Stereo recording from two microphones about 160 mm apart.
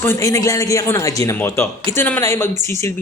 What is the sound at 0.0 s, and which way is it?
A man's voice, 15° left (ahead or behind).